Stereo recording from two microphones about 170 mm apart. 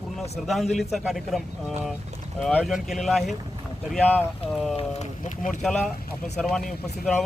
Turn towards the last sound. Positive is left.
turn(degrees=5)  # may be behind; listen again after turning